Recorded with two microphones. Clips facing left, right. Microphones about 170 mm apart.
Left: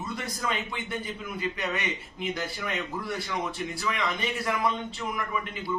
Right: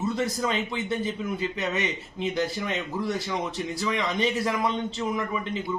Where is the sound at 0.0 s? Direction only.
25° right (ahead or behind).